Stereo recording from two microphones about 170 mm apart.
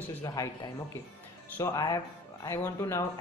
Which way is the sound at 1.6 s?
20° left (ahead or behind).